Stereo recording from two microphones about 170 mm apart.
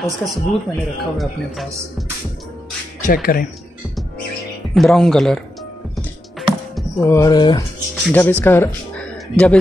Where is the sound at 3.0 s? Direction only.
60° left (ahead or behind).